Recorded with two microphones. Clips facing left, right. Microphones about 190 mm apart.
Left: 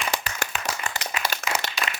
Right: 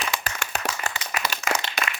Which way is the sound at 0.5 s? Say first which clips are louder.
Right 6 dB; 40° right (ahead or behind).